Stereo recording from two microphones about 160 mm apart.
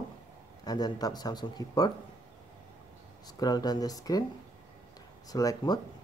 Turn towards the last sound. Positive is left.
turn(degrees=25)  # may be behind; listen again after turning